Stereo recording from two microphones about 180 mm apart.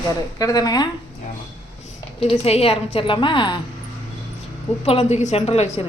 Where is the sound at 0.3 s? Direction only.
20° left (ahead or behind).